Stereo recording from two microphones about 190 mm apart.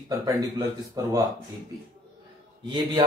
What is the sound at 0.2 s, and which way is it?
A man's voice, 20° right (ahead or behind).